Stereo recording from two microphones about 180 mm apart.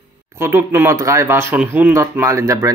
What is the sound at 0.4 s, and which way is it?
Speech, 15° right (ahead or behind).